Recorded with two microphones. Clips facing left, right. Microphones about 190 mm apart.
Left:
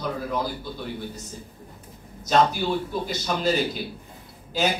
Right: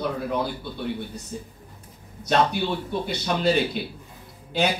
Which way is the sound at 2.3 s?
60° right (ahead or behind).